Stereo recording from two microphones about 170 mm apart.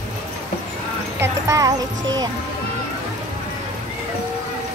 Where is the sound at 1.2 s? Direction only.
20° right (ahead or behind).